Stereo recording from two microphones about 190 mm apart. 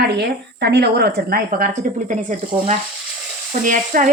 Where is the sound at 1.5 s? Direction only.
45° right (ahead or behind).